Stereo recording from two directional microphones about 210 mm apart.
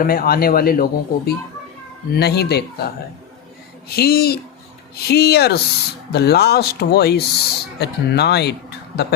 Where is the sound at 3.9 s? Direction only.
50° left (ahead or behind).